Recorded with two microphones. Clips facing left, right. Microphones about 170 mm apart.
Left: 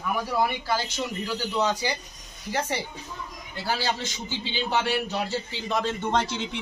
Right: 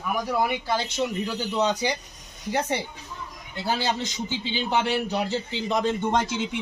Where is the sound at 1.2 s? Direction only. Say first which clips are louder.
Right 1 dB; 20° right (ahead or behind).